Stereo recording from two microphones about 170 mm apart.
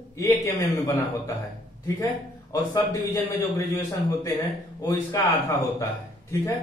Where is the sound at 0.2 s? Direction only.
20° left (ahead or behind).